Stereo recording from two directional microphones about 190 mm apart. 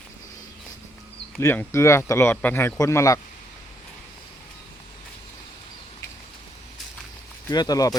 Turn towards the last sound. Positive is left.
turn(degrees=20)  # may be behind; listen again after turning